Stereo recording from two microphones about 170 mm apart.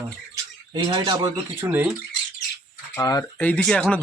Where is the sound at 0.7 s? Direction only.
25° right (ahead or behind).